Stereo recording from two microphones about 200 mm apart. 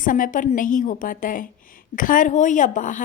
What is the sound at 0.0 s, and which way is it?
A woman's voice, 40° left (ahead or behind).